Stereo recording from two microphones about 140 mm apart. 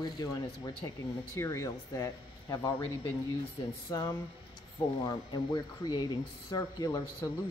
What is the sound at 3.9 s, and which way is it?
Speech, 20° left (ahead or behind).